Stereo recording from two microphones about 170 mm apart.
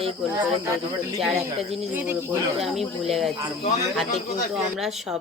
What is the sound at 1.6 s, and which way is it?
A woman's voice, centre (ahead or behind).